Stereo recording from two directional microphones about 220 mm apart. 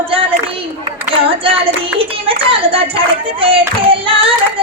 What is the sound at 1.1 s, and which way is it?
Hands, 25° right (ahead or behind).